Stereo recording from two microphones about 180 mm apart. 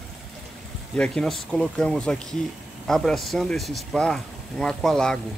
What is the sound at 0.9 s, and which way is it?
Speech, 5° left (ahead or behind).